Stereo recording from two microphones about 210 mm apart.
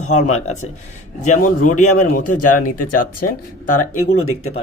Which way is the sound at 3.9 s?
90° left.